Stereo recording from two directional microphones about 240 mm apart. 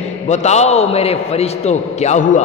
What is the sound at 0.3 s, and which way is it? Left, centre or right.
A man's voice, left.